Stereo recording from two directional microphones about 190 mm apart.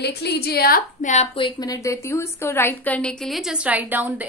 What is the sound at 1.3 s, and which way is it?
A woman's voice, 25° left (ahead or behind).